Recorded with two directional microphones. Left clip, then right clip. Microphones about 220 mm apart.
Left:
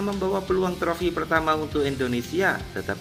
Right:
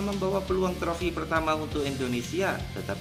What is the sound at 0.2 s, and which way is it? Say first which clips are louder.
Speech: left 3 dB; 15° left (ahead or behind).